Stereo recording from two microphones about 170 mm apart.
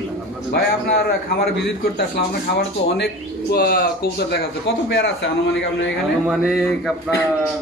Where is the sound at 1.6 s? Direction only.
75° left (ahead or behind).